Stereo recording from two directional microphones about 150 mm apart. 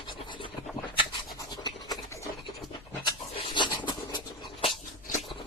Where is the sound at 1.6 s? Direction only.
25° left (ahead or behind).